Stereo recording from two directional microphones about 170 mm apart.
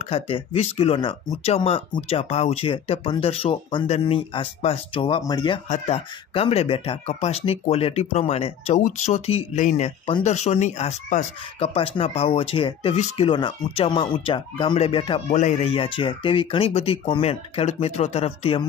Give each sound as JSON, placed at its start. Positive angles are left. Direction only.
{"t": 0.0, "sound": "speech", "side_deg": 35}
{"t": 5.7, "sound": "speech", "side_deg": 40}
{"t": 15.2, "sound": "speech", "side_deg": 45}